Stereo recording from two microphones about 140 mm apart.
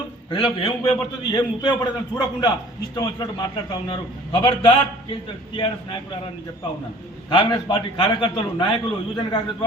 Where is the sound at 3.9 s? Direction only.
35° left (ahead or behind).